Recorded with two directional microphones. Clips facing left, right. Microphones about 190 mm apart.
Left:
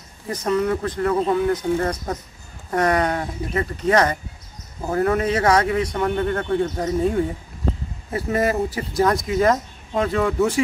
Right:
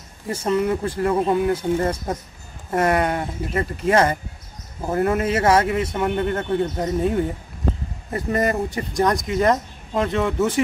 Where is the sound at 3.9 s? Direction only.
25° right (ahead or behind).